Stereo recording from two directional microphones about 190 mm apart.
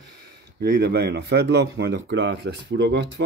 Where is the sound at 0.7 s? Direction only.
60° right (ahead or behind).